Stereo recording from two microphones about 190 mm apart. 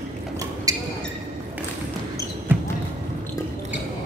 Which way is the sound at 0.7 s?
20° right (ahead or behind).